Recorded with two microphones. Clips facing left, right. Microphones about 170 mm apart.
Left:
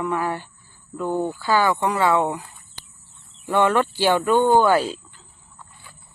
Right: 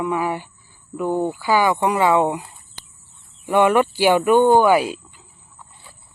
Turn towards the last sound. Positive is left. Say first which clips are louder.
# right 2 dB
turn(degrees=-10)  # may be behind; listen again after turning